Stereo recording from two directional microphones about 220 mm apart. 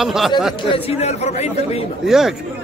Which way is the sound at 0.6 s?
25° left (ahead or behind).